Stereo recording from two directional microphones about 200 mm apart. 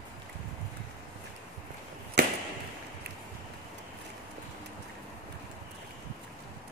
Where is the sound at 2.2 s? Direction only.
55° right (ahead or behind).